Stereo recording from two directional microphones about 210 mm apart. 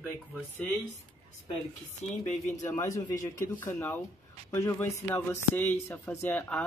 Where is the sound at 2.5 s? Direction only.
15° left (ahead or behind).